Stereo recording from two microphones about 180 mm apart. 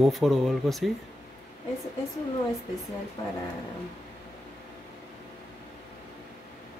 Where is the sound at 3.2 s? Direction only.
25° left (ahead or behind).